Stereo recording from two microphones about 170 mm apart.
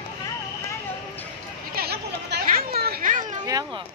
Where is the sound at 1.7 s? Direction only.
70° right (ahead or behind); by 3.4 s 50° right (ahead or behind).